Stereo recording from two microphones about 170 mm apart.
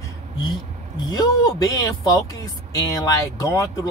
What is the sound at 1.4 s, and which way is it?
Speech, 20° left (ahead or behind).